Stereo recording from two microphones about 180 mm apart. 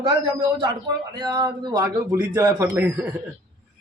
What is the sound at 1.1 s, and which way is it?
A man's voice, 25° right (ahead or behind).